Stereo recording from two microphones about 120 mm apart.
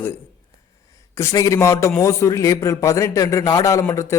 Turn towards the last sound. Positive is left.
turn(degrees=25)  # may be behind; listen again after turning